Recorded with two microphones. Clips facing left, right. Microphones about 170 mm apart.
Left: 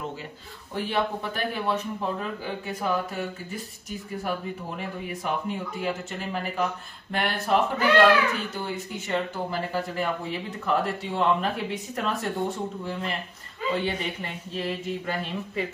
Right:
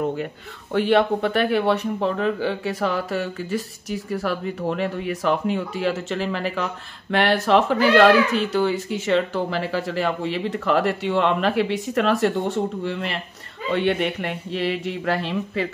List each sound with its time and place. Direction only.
0.7 s speech: 75° right (ahead or behind); by 15.6 s 90° right